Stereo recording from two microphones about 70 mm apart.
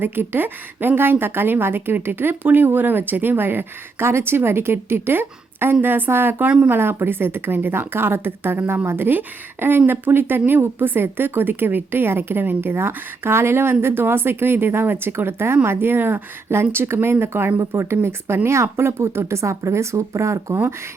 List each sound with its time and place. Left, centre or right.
0.0 s a woman's voice: right